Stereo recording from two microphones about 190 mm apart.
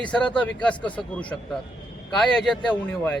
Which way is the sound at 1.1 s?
5° left (ahead or behind).